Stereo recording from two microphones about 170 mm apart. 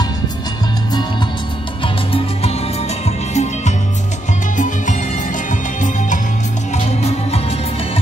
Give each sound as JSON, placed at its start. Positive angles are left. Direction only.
{"t": 3.1, "sound": "music", "side_deg": 40}